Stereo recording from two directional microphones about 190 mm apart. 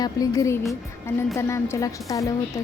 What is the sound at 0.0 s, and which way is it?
A woman's voice, 15° left (ahead or behind).